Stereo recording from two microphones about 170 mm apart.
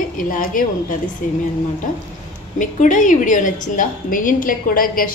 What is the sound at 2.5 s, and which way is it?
A woman's voice, 50° left (ahead or behind).